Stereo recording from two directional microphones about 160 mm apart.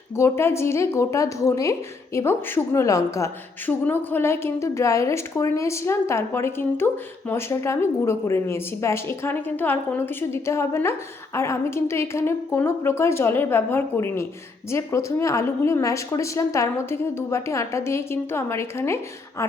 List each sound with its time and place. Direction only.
0.2 s a woman's voice: 15° left (ahead or behind)